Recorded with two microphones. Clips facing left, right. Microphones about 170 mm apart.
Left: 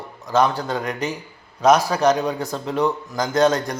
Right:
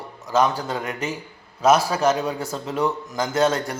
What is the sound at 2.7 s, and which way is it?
Speech, 35° left (ahead or behind).